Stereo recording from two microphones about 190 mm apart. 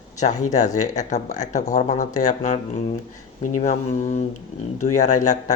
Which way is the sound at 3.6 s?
40° left (ahead or behind).